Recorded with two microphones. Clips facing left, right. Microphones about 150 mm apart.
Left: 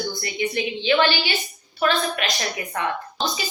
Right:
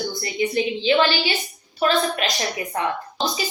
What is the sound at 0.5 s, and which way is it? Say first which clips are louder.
Speech: right 2 dB; 30° right (ahead or behind).